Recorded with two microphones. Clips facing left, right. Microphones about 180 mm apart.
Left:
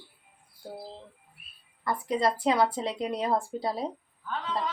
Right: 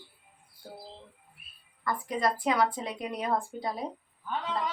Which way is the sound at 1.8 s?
25° left (ahead or behind).